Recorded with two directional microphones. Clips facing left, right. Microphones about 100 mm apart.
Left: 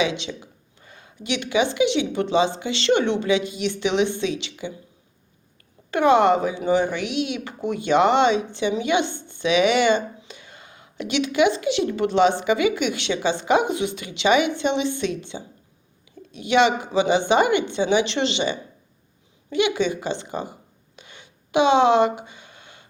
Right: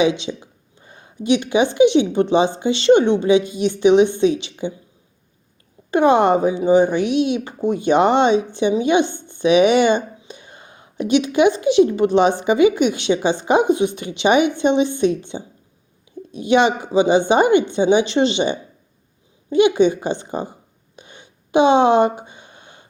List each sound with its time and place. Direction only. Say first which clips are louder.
0.0 s speech: right 6 dB; 25° right (ahead or behind)
5.9 s speech: right 3 dB; 20° right (ahead or behind)
21.0 s a sound: right 3 dB; 20° right (ahead or behind)